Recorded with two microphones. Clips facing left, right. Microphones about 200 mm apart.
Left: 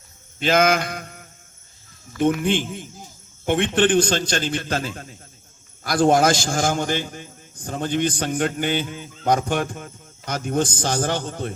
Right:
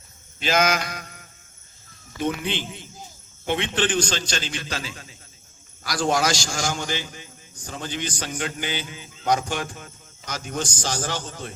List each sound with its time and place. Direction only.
0.3 s mantra: 55° left (ahead or behind)
2.1 s a man's voice: 50° left (ahead or behind)